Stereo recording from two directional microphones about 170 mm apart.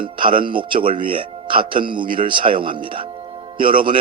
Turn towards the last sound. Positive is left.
turn(degrees=-30)  # may be behind; listen again after turning